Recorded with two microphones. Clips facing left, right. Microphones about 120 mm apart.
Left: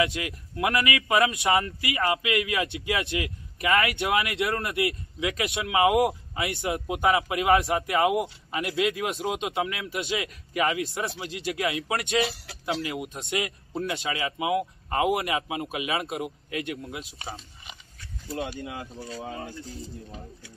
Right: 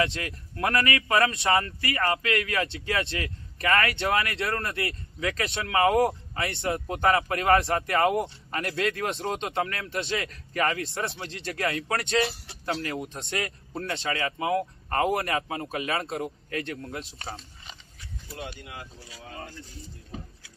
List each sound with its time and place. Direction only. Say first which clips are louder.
0.0 s speech: left 1 dB; 5° left (ahead or behind)
0.9 s a man's voice: left 1 dB; 20° left (ahead or behind); by 17.4 s centre (ahead or behind)
19.0 s speech: left 6 dB; centre (ahead or behind)